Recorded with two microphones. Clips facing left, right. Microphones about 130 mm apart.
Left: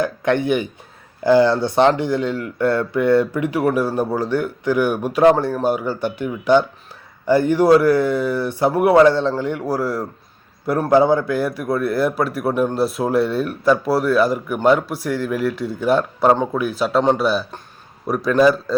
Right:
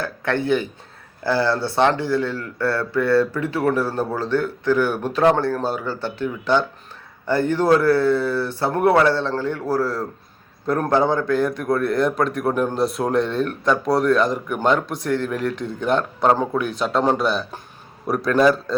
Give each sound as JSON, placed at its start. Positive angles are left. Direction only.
{"t": 0.0, "sound": "a man's voice", "side_deg": 15}